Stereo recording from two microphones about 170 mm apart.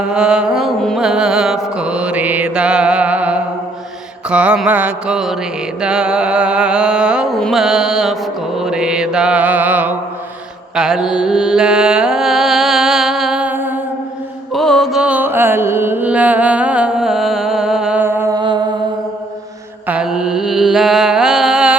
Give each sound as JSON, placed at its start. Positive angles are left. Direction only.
{"t": 0.1, "sound": "music", "side_deg": -5}
{"t": 10.8, "sound": "carnatic music", "side_deg": -5}
{"t": 14.5, "sound": "music", "side_deg": 0}
{"t": 18.3, "sound": "music", "side_deg": -25}
{"t": 19.9, "sound": "mantra", "side_deg": -5}